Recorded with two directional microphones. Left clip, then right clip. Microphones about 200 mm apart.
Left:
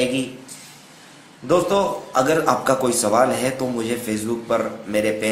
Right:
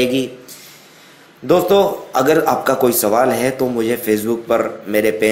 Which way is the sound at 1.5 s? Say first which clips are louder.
Right 5 dB; 20° right (ahead or behind).